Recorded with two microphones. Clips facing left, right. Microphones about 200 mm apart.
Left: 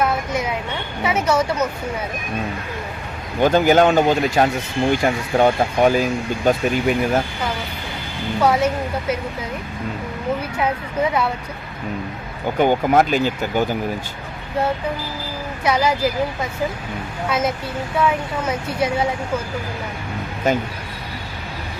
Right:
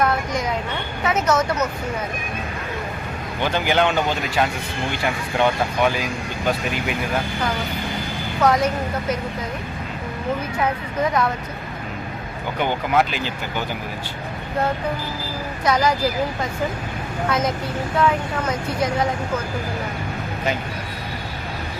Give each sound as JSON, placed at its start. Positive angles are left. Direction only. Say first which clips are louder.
{"t": 0.0, "sound": "vehicle", "louder": "left 1 dB", "side_deg": 10}
{"t": 1.0, "sound": "speech", "louder": "left 1 dB", "side_deg": 10}
{"t": 3.4, "sound": "speech", "louder": "left 6 dB", "side_deg": 45}
{"t": 8.4, "sound": "speech", "louder": "left 1 dB", "side_deg": 10}
{"t": 10.6, "sound": "speech", "louder": "left 1 dB", "side_deg": 10}
{"t": 12.5, "sound": "speech", "louder": "left 5 dB", "side_deg": 45}
{"t": 15.6, "sound": "speech", "louder": "left 1 dB", "side_deg": 10}
{"t": 17.2, "sound": "speech", "louder": "left 1 dB", "side_deg": 10}